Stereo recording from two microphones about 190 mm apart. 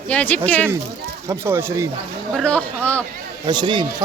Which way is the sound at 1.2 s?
15° right (ahead or behind).